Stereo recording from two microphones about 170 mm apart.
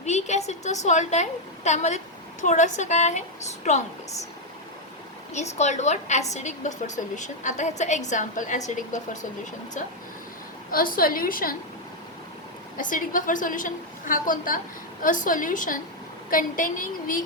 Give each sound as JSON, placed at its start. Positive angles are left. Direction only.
{"t": 0.0, "sound": "a woman's voice", "side_deg": 40}
{"t": 5.3, "sound": "a woman's voice", "side_deg": 40}
{"t": 10.7, "sound": "a woman's voice", "side_deg": 60}
{"t": 12.7, "sound": "a woman's voice", "side_deg": 50}